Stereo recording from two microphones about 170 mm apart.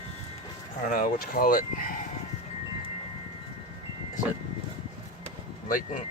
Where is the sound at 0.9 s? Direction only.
55° left (ahead or behind).